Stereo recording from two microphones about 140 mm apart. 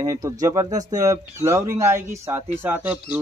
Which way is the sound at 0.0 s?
25° right (ahead or behind).